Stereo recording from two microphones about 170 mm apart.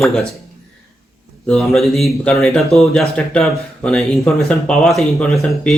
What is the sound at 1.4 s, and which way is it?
Speech, centre (ahead or behind).